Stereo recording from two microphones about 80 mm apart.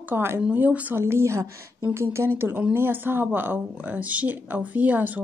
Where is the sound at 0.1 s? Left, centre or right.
Right.